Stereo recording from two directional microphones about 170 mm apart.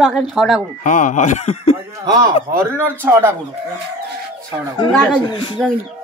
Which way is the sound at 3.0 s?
10° right (ahead or behind).